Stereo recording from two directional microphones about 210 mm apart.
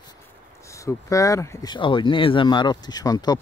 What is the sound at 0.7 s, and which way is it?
Speech, 15° left (ahead or behind).